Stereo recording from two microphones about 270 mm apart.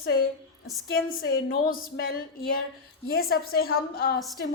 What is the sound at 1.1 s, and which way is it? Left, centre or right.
A woman's voice, left.